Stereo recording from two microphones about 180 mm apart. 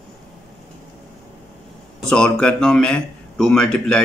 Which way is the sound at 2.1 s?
5° left (ahead or behind).